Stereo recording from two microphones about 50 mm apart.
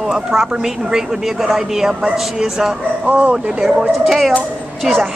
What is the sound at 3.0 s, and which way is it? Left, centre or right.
Speech, right.